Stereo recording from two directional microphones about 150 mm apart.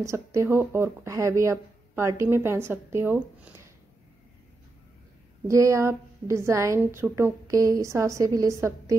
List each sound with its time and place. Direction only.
0.0 s speech: 20° right (ahead or behind)
5.5 s a woman's voice: 20° right (ahead or behind)